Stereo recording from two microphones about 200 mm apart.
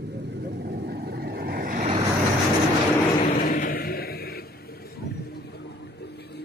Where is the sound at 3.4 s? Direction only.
45° left (ahead or behind).